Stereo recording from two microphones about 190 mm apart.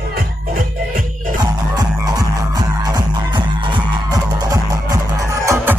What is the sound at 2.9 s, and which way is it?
Music, 20° right (ahead or behind).